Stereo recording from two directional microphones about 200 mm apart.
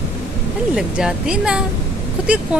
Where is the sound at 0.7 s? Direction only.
5° right (ahead or behind).